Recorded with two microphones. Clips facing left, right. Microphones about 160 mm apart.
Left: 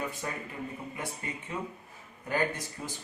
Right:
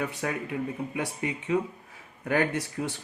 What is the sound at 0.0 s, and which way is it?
Speech, 70° right (ahead or behind).